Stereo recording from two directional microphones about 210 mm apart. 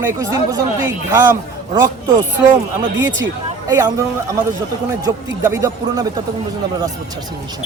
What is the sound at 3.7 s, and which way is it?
Speech, 15° right (ahead or behind).